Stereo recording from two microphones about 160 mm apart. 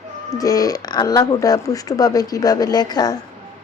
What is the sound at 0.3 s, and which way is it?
Speech, 20° left (ahead or behind).